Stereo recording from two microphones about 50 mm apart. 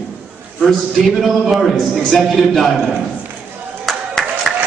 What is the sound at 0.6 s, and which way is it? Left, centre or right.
A man's voice, centre.